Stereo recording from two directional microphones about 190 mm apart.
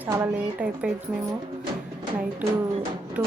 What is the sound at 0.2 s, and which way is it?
Speech, 5° right (ahead or behind).